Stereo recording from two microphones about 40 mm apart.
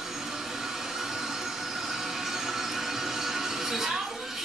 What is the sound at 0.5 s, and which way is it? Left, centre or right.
Train, centre.